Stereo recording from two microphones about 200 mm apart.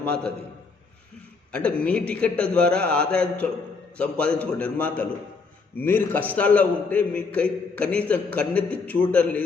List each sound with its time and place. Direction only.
0.0 s a man's voice: 5° left (ahead or behind)
1.5 s a man's voice: 5° left (ahead or behind)